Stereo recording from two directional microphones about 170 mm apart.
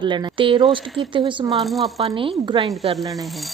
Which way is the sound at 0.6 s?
Centre (ahead or behind).